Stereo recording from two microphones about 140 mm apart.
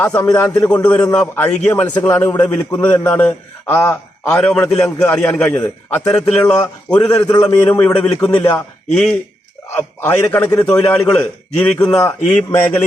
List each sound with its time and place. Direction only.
0.0 s a man's voice: 10° left (ahead or behind)
3.8 s a man's voice: 20° left (ahead or behind)
4.3 s a man's voice: 5° left (ahead or behind)
7.2 s a man's voice: 30° left (ahead or behind)
7.4 s a man's voice: 10° left (ahead or behind)